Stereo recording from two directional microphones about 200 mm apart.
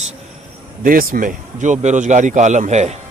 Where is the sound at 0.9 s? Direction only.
45° right (ahead or behind).